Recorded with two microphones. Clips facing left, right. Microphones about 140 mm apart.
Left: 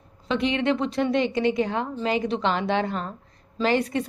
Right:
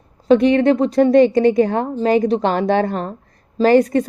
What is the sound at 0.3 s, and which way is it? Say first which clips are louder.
A woman's voice: right 11 dB; 45° right (ahead or behind).